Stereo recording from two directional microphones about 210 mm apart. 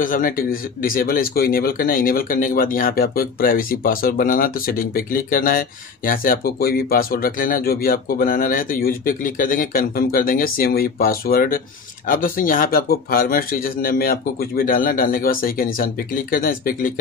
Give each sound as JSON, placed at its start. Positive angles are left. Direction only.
{"t": 0.0, "sound": "speech", "side_deg": 40}